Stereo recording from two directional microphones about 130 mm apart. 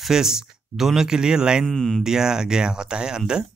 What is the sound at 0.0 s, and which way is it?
Speech, 5° right (ahead or behind).